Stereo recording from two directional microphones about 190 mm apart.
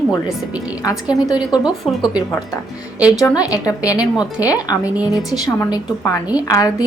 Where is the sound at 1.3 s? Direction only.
25° left (ahead or behind).